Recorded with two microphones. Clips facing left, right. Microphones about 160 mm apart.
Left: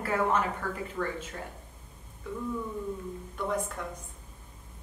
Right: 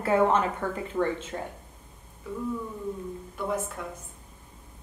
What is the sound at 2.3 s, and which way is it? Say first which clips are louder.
Speech: right 2 dB; 5° right (ahead or behind).